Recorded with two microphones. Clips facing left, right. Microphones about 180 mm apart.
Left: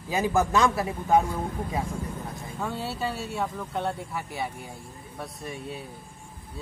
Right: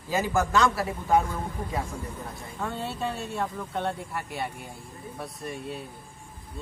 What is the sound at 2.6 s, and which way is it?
Speech, 5° left (ahead or behind).